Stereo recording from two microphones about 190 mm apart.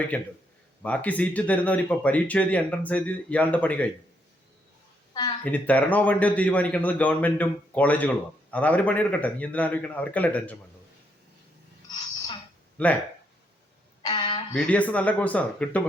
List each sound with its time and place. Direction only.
0.1 s a man's voice: 10° left (ahead or behind)
5.5 s a man's voice: 5° left (ahead or behind)
12.7 s speech: 5° left (ahead or behind)
14.0 s a sound: 25° left (ahead or behind)
14.5 s a man's voice: 5° left (ahead or behind)